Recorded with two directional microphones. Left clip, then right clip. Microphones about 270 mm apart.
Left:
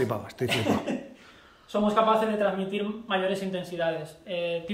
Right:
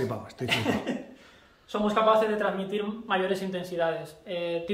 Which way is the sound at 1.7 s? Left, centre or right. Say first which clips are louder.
Even; centre.